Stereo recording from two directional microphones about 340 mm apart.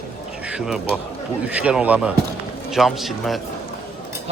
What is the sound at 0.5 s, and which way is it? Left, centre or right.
A man's voice, centre.